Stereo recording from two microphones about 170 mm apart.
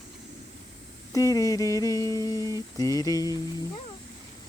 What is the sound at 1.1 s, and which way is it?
Humming, 20° left (ahead or behind).